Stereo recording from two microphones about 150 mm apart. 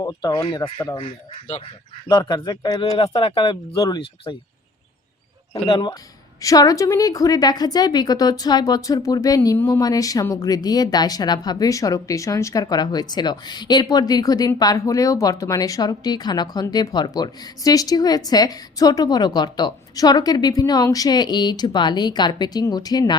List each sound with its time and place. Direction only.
0.0 s speech: 25° left (ahead or behind); by 1.6 s 45° left (ahead or behind)
2.0 s speech: 30° left (ahead or behind)
5.6 s speech: 30° left (ahead or behind)